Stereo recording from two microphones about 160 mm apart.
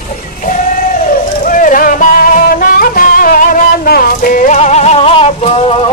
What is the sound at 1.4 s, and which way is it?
Music, 55° left (ahead or behind).